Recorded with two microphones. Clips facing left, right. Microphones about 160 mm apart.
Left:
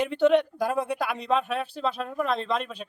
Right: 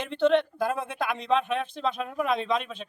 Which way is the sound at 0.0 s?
10° left (ahead or behind).